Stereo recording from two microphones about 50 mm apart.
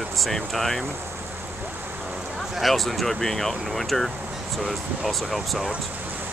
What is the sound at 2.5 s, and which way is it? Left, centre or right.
Speech, centre.